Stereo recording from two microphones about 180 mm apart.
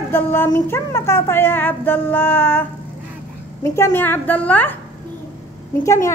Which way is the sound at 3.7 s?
15° left (ahead or behind).